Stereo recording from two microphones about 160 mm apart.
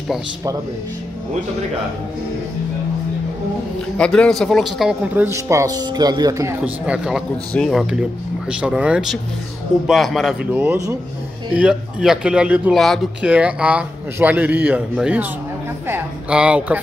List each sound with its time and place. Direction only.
4.0 s speech: 5° left (ahead or behind); by 6.5 s 20° right (ahead or behind)
6.6 s speech: 5° right (ahead or behind)
10.5 s speech: 10° right (ahead or behind)